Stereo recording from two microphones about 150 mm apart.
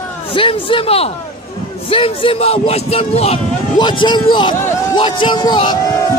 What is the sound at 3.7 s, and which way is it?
A man's voice, 30° left (ahead or behind).